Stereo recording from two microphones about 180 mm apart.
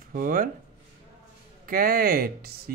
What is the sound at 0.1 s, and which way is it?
Speech, 50° right (ahead or behind).